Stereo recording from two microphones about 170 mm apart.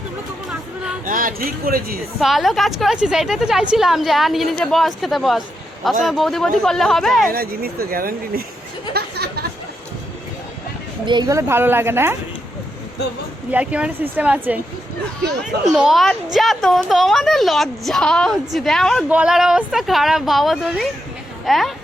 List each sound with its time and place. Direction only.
1.0 s speech: 55° right (ahead or behind)
2.2 s a woman's voice: centre (ahead or behind)
7.3 s speech: 60° right (ahead or behind)
8.9 s a sound: 70° right (ahead or behind)
11.0 s a woman's voice: 25° right (ahead or behind)
13.5 s a woman's voice: 10° right (ahead or behind)
15.7 s a woman's voice: centre (ahead or behind)